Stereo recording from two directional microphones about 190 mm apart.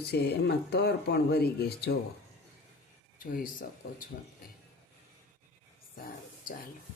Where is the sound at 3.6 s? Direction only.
45° left (ahead or behind).